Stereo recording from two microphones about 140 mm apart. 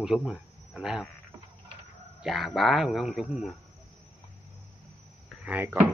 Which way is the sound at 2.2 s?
Centre (ahead or behind).